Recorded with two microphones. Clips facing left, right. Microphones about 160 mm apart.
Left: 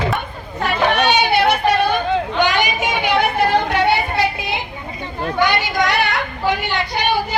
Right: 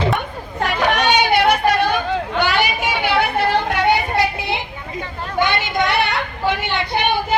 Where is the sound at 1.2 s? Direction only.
10° right (ahead or behind).